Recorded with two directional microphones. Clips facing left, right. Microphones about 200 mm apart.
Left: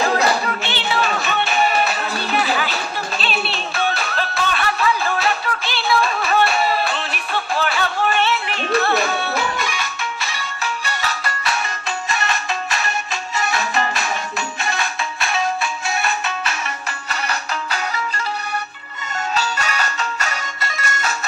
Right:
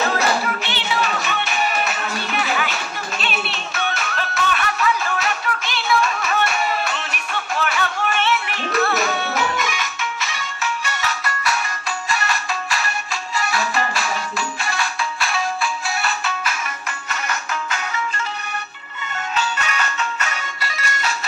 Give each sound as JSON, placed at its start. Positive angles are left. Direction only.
{"t": 0.0, "sound": "music", "side_deg": 30}
{"t": 17.1, "sound": "music", "side_deg": 35}
{"t": 19.3, "sound": "music", "side_deg": 35}